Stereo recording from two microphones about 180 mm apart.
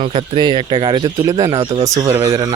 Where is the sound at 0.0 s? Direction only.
30° right (ahead or behind).